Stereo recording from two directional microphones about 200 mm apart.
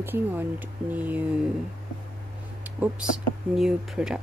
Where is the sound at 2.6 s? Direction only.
10° right (ahead or behind).